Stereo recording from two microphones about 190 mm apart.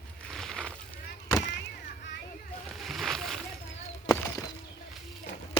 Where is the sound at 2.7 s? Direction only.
Centre (ahead or behind).